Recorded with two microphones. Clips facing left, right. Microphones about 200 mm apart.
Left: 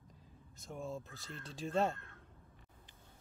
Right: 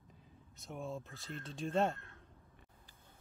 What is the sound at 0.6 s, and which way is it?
Speech, centre (ahead or behind).